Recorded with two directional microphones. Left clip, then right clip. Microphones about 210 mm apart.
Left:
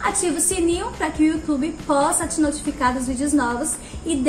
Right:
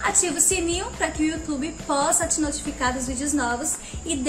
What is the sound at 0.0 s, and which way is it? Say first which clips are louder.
A woman's voice: left 1 dB; 10° right (ahead or behind).